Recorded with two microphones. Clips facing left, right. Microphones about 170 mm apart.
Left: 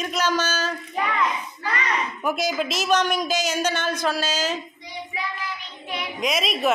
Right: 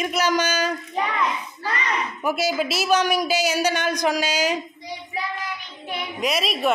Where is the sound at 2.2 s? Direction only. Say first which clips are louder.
Right 3 dB; 5° right (ahead or behind).